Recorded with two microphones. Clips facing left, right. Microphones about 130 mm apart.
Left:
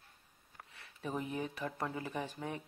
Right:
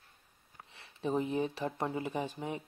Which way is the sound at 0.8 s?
25° right (ahead or behind).